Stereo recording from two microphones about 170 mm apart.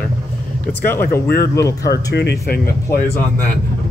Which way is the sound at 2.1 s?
80° left.